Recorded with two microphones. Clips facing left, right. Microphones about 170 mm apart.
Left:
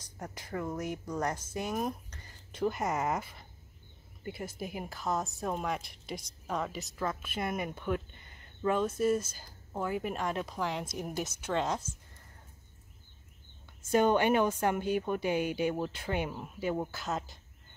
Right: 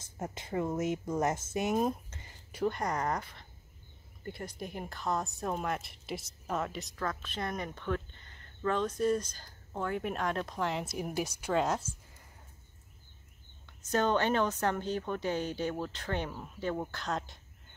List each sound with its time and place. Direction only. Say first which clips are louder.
0.2 s speech: right 3 dB; 25° right (ahead or behind)
2.5 s a woman's voice: left 1 dB; 5° left (ahead or behind)
13.7 s a woman's voice: left 3 dB; 10° left (ahead or behind)